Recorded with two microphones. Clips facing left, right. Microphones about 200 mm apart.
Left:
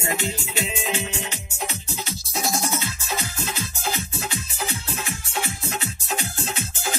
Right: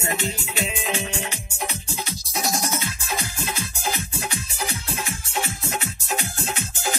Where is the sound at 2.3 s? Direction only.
15° right (ahead or behind).